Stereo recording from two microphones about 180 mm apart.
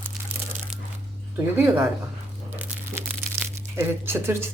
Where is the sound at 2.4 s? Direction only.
10° right (ahead or behind).